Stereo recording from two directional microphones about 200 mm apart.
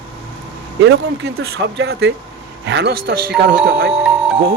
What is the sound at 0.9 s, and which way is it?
Speech, 55° right (ahead or behind).